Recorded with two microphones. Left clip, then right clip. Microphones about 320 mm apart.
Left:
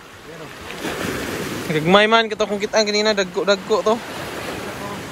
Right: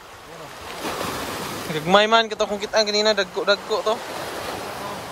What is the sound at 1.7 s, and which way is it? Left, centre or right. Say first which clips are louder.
Speech: left 2 dB; centre.